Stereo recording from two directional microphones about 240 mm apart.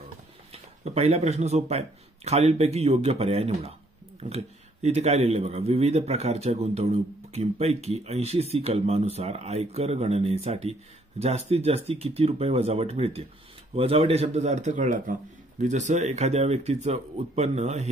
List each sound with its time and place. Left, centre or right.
0.5 s speech: right
4.8 s a man's voice: right